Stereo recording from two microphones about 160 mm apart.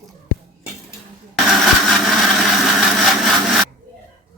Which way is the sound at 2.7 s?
Centre (ahead or behind).